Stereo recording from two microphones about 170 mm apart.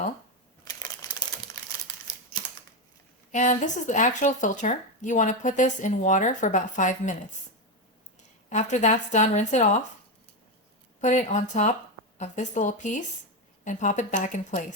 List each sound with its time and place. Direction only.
0.6 s crumpling: 20° left (ahead or behind)
3.3 s speech: 45° left (ahead or behind)
8.4 s speech: 45° left (ahead or behind)
11.0 s speech: 45° left (ahead or behind)